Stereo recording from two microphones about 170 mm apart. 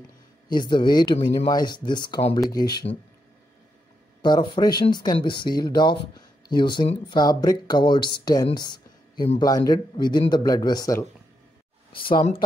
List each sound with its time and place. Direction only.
0.5 s speech: 25° left (ahead or behind)
4.2 s speech: 25° left (ahead or behind)
8.5 s a sound: 25° left (ahead or behind)
9.4 s speech: 20° left (ahead or behind)